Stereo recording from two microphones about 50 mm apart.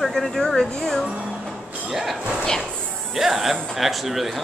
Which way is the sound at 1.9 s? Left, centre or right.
Centre.